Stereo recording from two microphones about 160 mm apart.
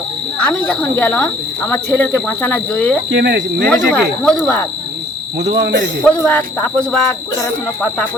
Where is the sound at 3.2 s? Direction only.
90° right.